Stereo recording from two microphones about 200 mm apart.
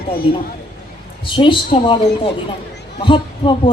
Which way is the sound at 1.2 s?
25° left (ahead or behind).